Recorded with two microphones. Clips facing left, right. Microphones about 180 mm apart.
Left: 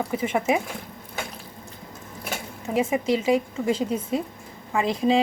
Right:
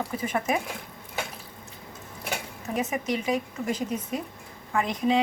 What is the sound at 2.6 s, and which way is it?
A woman's voice, 30° left (ahead or behind).